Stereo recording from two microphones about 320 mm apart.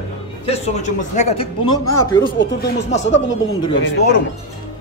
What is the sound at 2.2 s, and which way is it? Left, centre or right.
Speech, left.